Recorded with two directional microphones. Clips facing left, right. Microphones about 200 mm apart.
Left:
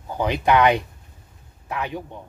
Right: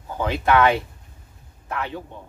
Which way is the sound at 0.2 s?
15° left (ahead or behind).